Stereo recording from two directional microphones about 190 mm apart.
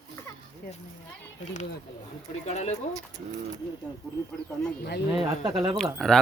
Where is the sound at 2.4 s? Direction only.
35° left (ahead or behind).